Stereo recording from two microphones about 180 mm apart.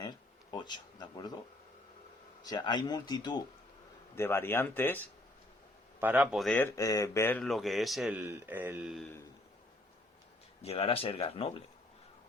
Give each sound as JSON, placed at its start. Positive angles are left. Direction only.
{"t": 0.0, "sound": "a sound", "side_deg": 20}
{"t": 2.4, "sound": "speech", "side_deg": 20}
{"t": 6.0, "sound": "speech", "side_deg": -10}
{"t": 6.7, "sound": "speech", "side_deg": 20}
{"t": 10.6, "sound": "speech", "side_deg": 35}